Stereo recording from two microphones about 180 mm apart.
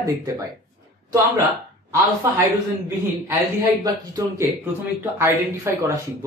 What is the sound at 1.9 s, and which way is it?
Speech, 15° right (ahead or behind).